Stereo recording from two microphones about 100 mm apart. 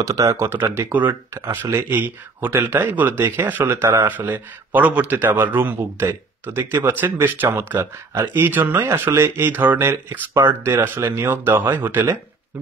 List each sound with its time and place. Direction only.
0.0 s speech: 30° right (ahead or behind)